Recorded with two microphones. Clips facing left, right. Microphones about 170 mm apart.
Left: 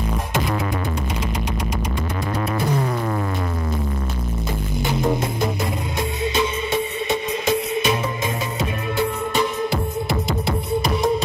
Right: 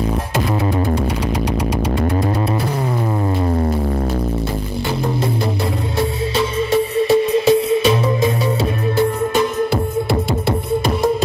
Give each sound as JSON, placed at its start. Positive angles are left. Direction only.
{"t": 6.7, "sound": "music", "side_deg": -35}